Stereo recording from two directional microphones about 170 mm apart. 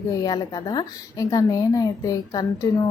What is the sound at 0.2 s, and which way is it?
A woman's voice, 25° left (ahead or behind).